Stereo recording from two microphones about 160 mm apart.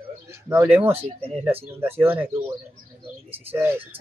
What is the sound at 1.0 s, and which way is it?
Speech, 35° right (ahead or behind).